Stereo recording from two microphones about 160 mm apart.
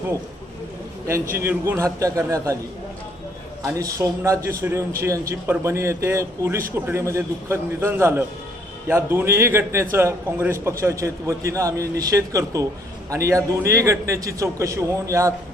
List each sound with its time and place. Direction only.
1.3 s a man's voice: 15° right (ahead or behind)
3.8 s a man's voice: 20° right (ahead or behind)